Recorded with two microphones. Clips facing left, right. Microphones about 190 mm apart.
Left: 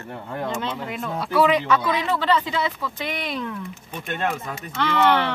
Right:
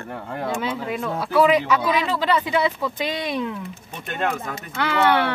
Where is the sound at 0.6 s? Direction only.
5° right (ahead or behind).